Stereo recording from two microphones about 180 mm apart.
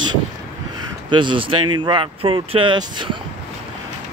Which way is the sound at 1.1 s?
25° right (ahead or behind).